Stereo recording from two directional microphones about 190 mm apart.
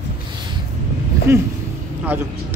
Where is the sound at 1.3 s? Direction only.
15° right (ahead or behind).